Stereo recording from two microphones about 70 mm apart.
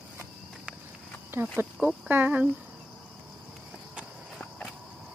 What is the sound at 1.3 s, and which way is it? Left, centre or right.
Speech, right.